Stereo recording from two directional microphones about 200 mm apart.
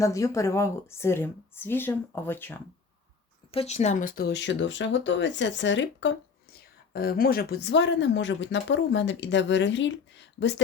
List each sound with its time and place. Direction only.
0.0 s a woman's voice: 15° left (ahead or behind)
3.5 s speech: 30° left (ahead or behind); by 10.5 s 65° left (ahead or behind)